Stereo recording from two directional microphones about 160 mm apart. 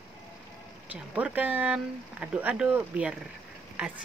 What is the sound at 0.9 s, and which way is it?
Speech, 10° right (ahead or behind).